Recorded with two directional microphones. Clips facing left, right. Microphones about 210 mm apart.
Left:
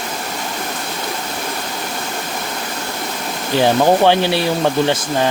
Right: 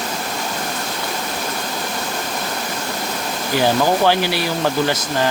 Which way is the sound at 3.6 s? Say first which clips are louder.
Left 4 dB; 20° left (ahead or behind).